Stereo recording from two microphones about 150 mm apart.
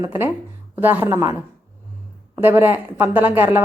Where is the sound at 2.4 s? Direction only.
15° right (ahead or behind).